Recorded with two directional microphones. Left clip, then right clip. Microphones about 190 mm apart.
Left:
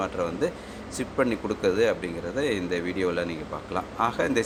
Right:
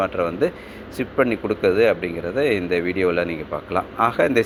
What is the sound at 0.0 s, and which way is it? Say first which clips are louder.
A man's voice: right 7 dB; 15° right (ahead or behind).